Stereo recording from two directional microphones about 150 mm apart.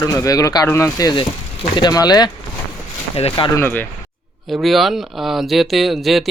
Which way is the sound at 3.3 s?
25° left (ahead or behind).